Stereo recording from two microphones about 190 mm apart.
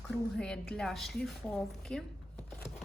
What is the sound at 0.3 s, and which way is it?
A woman's voice, 5° left (ahead or behind).